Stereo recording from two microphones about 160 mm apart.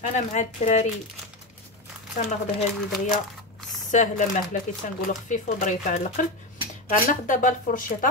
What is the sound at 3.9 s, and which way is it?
Speech, 50° left (ahead or behind).